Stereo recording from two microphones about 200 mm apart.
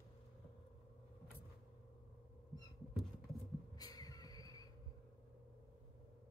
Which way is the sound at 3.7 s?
20° left (ahead or behind).